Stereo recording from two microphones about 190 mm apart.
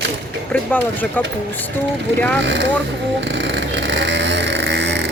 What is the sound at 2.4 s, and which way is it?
Speech, 70° right (ahead or behind).